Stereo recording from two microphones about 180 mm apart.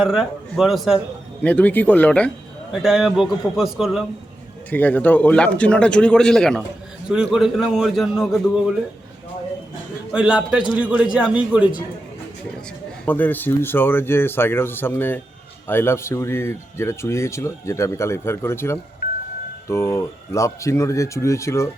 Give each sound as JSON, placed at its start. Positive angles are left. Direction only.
{"t": 0.0, "sound": "a man's voice", "side_deg": 0}
{"t": 4.7, "sound": "a man's voice", "side_deg": 10}
{"t": 10.1, "sound": "a man's voice", "side_deg": -5}
{"t": 13.1, "sound": "speech", "side_deg": 10}